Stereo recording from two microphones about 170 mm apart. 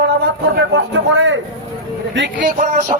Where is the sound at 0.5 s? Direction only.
85° right.